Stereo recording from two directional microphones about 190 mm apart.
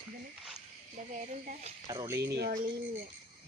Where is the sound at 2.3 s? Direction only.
55° right (ahead or behind).